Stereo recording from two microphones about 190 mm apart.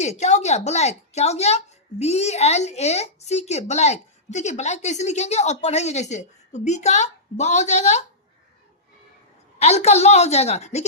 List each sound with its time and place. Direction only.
0.0 s speech: 35° left (ahead or behind)
9.6 s speech: 35° left (ahead or behind)